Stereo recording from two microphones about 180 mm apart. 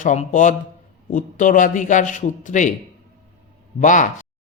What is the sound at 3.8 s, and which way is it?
Speech, 45° left (ahead or behind).